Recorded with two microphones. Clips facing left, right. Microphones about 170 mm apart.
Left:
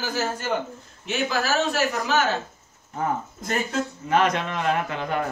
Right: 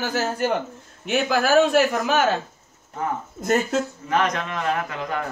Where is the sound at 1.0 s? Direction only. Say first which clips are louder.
Right 4 dB; 55° right (ahead or behind).